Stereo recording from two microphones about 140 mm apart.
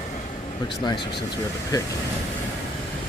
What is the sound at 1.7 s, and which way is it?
Speech, 30° left (ahead or behind).